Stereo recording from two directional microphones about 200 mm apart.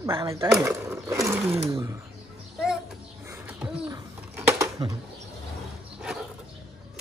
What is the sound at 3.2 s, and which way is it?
Bird, 10° right (ahead or behind).